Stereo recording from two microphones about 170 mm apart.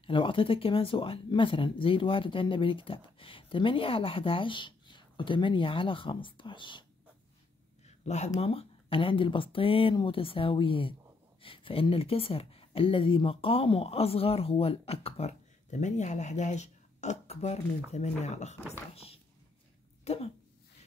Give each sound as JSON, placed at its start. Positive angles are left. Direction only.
{"t": 0.0, "sound": "speech", "side_deg": 30}
{"t": 7.8, "sound": "a sound", "side_deg": 40}
{"t": 8.4, "sound": "speech", "side_deg": 35}